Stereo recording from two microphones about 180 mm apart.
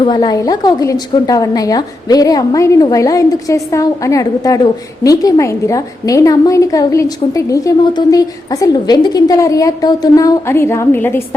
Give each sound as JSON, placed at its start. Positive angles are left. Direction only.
{"t": 0.0, "sound": "a woman's voice", "side_deg": 25}